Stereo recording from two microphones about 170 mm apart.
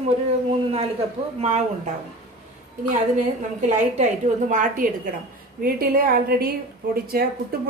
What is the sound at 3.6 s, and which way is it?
A woman's voice, 45° right (ahead or behind).